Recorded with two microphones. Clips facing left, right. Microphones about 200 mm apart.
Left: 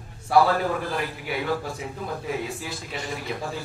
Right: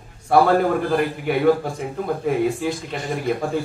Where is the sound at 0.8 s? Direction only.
55° right (ahead or behind).